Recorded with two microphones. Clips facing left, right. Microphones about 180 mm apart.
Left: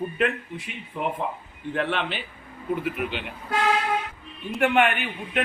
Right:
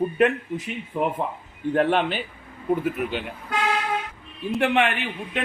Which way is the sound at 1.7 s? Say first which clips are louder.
Right 6 dB; 45° right (ahead or behind).